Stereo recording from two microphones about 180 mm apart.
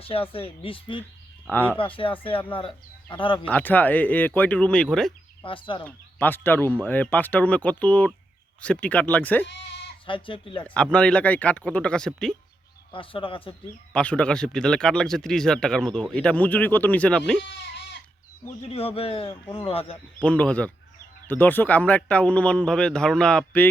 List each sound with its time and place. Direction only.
0.0 s speech: 30° left (ahead or behind)
1.5 s a man's voice: 10° left (ahead or behind)
1.8 s speech: 30° left (ahead or behind)
3.4 s a man's voice: 10° left (ahead or behind)
5.4 s speech: 30° left (ahead or behind)
5.8 s a man's voice: 10° left (ahead or behind)
9.5 s bleat: 75° left (ahead or behind)
10.1 s speech: 30° left (ahead or behind)
10.9 s speech: 5° left (ahead or behind)
12.9 s speech: 30° left (ahead or behind)
13.9 s a man's voice: 5° left (ahead or behind)
18.6 s speech: 35° left (ahead or behind)
20.1 s a man's voice: 5° left (ahead or behind)